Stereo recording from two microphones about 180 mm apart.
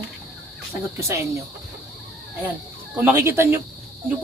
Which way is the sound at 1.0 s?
15° right (ahead or behind).